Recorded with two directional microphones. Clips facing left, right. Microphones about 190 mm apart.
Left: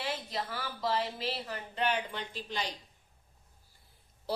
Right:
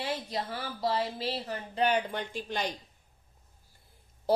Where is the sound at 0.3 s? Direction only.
35° right (ahead or behind).